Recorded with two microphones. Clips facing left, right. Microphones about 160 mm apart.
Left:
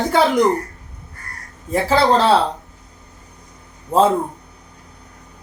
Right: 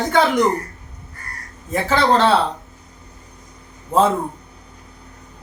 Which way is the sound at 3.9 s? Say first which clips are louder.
Left 1 dB; 10° left (ahead or behind).